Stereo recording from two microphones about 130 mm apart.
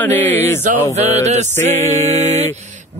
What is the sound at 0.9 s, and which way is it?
Speech, 55° right (ahead or behind).